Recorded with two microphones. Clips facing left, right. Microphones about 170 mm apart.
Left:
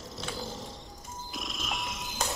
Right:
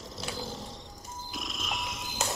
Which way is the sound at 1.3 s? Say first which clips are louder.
Even; centre (ahead or behind).